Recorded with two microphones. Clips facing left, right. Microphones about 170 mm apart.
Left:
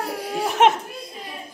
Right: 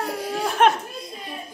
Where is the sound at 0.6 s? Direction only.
20° left (ahead or behind).